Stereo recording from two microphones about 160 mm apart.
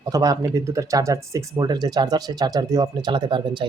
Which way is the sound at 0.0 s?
20° right (ahead or behind).